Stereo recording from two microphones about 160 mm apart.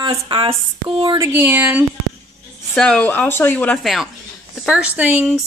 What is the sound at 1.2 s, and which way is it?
Speech, 15° right (ahead or behind).